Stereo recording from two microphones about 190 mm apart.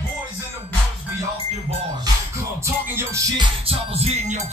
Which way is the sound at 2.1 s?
20° right (ahead or behind).